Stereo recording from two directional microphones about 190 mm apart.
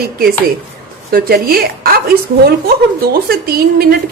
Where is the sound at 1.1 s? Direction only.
50° right (ahead or behind).